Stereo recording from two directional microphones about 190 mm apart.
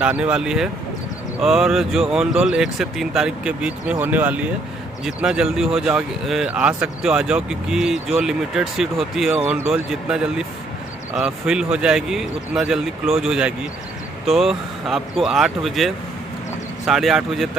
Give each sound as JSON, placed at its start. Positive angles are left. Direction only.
{"t": 0.0, "sound": "speech", "side_deg": -5}